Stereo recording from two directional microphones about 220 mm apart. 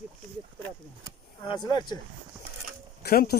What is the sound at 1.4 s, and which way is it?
Speech, 20° left (ahead or behind).